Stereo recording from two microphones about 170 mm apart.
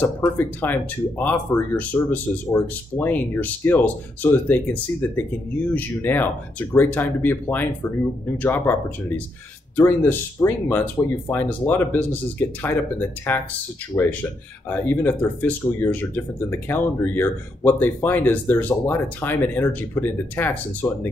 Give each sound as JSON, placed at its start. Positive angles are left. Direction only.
{"t": 0.0, "sound": "speech", "side_deg": 10}
{"t": 13.3, "sound": "speech", "side_deg": 10}